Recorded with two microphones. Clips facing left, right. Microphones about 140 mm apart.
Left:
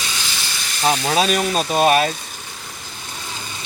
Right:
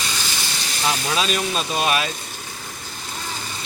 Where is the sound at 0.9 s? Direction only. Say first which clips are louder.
Left 5 dB; 45° left (ahead or behind).